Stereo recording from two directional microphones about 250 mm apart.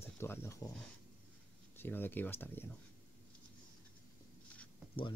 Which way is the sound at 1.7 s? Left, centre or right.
Centre.